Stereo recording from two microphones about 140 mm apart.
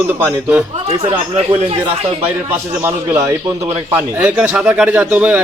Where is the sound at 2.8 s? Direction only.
20° right (ahead or behind).